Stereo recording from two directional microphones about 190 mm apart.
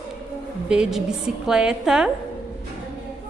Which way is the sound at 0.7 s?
5° right (ahead or behind).